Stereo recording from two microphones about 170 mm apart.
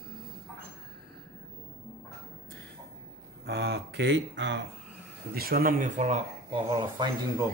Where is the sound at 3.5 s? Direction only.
80° right.